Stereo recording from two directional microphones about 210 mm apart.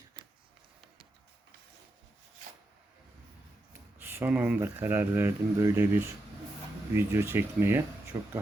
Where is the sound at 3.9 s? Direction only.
10° right (ahead or behind).